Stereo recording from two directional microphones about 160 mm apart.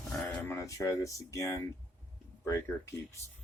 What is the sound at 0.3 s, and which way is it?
Speech, 10° left (ahead or behind).